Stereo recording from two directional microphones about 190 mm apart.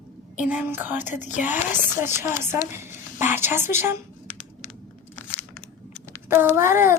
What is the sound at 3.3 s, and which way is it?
Speech, 10° right (ahead or behind).